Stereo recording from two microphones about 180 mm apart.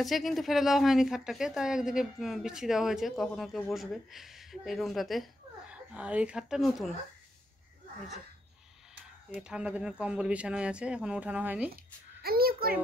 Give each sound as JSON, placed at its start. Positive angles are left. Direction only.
{"t": 0.0, "sound": "a woman's voice", "side_deg": 0}
{"t": 9.3, "sound": "a woman's voice", "side_deg": -5}
{"t": 11.7, "sound": "a child's voice", "side_deg": -55}